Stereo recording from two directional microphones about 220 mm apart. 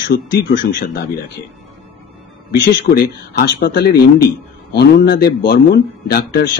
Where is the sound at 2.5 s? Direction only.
45° left (ahead or behind).